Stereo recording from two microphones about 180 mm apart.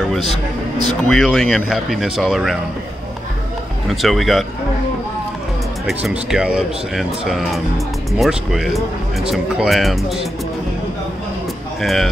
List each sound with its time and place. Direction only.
0.2 s a man's voice: 25° right (ahead or behind)
1.0 s speech: 5° left (ahead or behind)
3.9 s speech: centre (ahead or behind)
5.9 s speech: centre (ahead or behind)
11.8 s speech: centre (ahead or behind)